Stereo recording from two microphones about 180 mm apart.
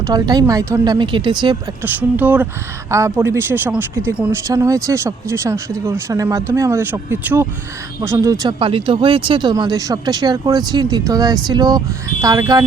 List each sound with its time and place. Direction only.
0.1 s speech: 20° right (ahead or behind)
1.8 s speech: 10° right (ahead or behind)